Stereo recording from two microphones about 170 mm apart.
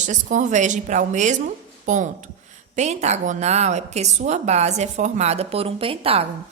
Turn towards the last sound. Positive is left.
turn(degrees=-35)  # may be behind; listen again after turning